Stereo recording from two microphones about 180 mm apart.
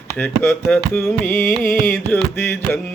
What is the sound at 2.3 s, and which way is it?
Mantra, 10° left (ahead or behind).